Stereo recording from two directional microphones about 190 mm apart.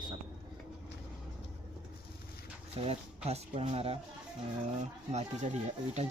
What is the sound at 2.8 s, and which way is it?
Speech, 35° right (ahead or behind).